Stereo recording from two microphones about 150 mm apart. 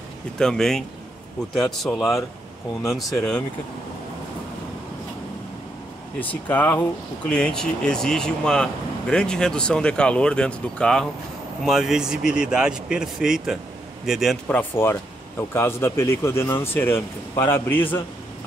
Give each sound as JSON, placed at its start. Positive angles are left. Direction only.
{"t": 0.4, "sound": "speech", "side_deg": 5}
{"t": 6.1, "sound": "speech", "side_deg": 10}
{"t": 14.5, "sound": "speech", "side_deg": 15}